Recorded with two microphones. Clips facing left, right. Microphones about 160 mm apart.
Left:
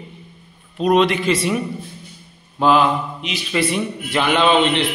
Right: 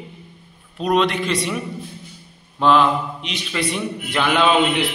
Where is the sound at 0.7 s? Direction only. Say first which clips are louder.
Left 3 dB; centre (ahead or behind).